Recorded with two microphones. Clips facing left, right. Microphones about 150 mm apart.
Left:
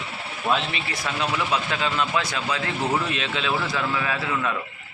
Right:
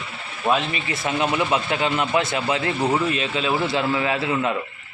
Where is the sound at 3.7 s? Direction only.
25° right (ahead or behind).